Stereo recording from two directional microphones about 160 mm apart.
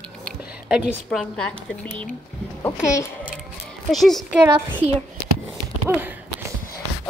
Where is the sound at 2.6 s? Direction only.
15° left (ahead or behind).